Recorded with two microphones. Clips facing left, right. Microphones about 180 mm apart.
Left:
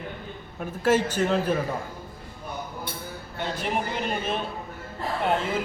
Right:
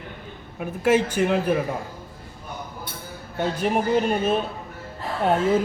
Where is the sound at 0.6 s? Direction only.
10° right (ahead or behind).